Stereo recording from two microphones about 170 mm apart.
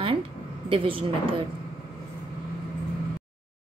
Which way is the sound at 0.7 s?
30° right (ahead or behind).